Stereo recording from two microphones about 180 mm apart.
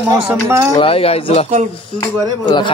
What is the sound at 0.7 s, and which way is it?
Speech, 35° left (ahead or behind).